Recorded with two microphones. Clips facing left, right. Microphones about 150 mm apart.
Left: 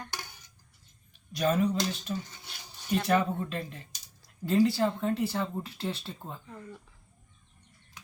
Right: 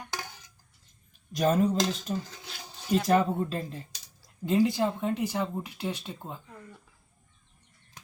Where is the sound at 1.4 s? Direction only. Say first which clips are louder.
Right 2 dB; 40° right (ahead or behind).